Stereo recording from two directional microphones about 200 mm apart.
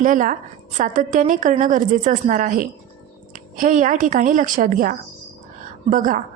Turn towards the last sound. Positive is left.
turn(degrees=-40)  # may be behind; listen again after turning